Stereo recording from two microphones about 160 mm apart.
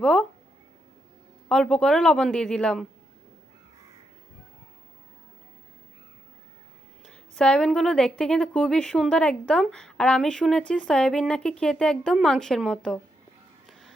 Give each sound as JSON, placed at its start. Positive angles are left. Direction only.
{"t": 0.0, "sound": "a sound", "side_deg": 0}
{"t": 1.5, "sound": "a woman's voice", "side_deg": 5}
{"t": 7.1, "sound": "a woman's voice", "side_deg": 5}
{"t": 13.7, "sound": "music", "side_deg": 0}